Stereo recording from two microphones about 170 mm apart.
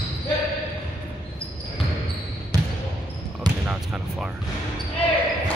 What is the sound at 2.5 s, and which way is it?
Basketball bounce, 20° right (ahead or behind).